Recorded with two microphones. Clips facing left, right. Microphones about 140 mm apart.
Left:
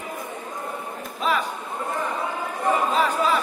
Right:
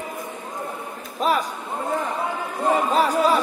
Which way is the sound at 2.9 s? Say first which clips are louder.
Right 3 dB; 35° right (ahead or behind).